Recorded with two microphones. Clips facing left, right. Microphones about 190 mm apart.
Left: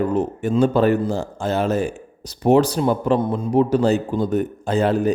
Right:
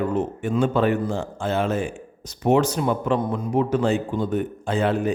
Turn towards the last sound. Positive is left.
turn(degrees=40)  # may be behind; listen again after turning